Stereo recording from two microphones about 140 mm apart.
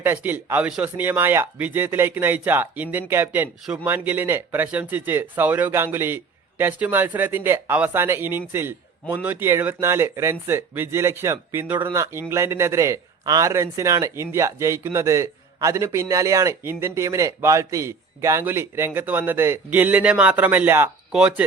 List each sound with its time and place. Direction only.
0.0 s a man's voice: 15° right (ahead or behind)